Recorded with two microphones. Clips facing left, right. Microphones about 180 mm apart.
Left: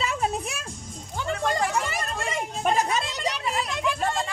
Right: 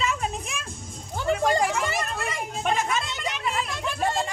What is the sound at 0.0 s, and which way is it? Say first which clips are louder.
Music: left 1 dB; 35° left (ahead or behind).